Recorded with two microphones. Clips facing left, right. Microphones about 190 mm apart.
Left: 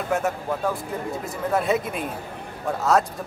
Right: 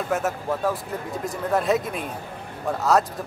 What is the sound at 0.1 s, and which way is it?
Speech, centre (ahead or behind).